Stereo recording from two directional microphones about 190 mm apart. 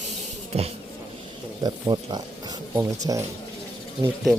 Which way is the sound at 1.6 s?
20° right (ahead or behind).